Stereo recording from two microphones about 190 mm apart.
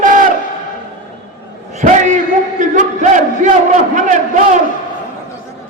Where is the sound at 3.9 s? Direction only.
40° right (ahead or behind).